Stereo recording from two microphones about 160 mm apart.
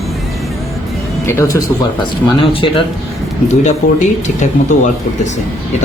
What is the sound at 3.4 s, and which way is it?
Speech, 45° left (ahead or behind).